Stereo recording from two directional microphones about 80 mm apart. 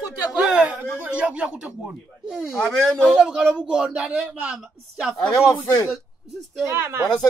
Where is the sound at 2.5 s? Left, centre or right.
Centre.